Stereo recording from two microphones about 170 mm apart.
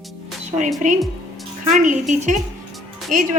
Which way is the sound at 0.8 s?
45° right (ahead or behind).